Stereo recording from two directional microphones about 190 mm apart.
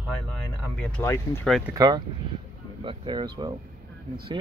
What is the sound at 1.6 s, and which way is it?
Speech, 20° right (ahead or behind).